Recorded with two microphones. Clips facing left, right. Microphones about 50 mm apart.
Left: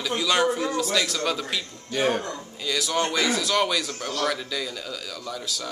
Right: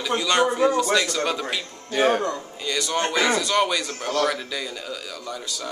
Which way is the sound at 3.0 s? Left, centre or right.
Centre.